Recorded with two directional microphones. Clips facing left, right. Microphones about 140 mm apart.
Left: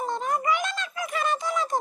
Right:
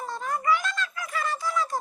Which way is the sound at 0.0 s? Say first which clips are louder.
Left 3 dB; 20° left (ahead or behind).